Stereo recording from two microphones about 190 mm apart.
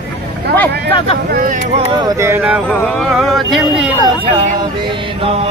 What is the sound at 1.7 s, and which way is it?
Speech, 20° right (ahead or behind).